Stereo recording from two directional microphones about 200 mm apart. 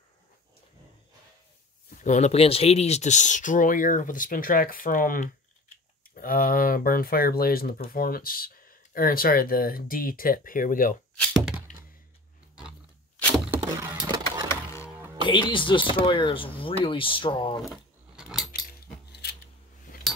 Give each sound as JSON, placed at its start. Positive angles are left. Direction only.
{"t": 2.0, "sound": "speech", "side_deg": 35}
{"t": 11.1, "sound": "thunk", "side_deg": -5}
{"t": 13.5, "sound": "vehicle", "side_deg": -15}
{"t": 14.5, "sound": "music", "side_deg": 15}
{"t": 15.2, "sound": "speech", "side_deg": 25}
{"t": 17.6, "sound": "a sound", "side_deg": -5}
{"t": 18.5, "sound": "keys jangling", "side_deg": 50}
{"t": 19.9, "sound": "a sound", "side_deg": 40}